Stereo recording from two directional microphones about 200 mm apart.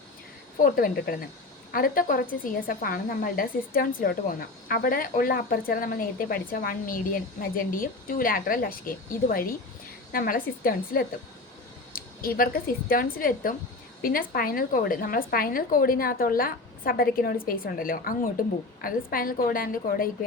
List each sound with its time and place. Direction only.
0.6 s a woman's voice: 45° left (ahead or behind)